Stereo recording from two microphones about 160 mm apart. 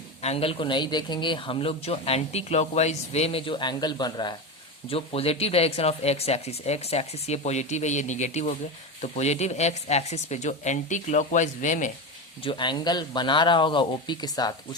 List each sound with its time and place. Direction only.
0.2 s speech: 40° left (ahead or behind)
4.9 s speech: 35° left (ahead or behind)
12.4 s speech: 30° left (ahead or behind)